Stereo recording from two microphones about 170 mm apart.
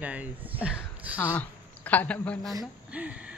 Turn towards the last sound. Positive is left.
turn(degrees=-5)  # may be behind; listen again after turning